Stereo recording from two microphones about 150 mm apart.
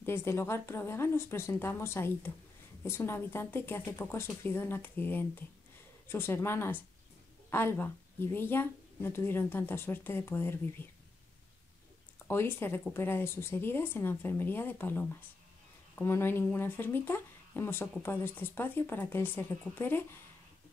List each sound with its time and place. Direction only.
0.0 s speech: 15° left (ahead or behind)
12.3 s speech: 15° left (ahead or behind)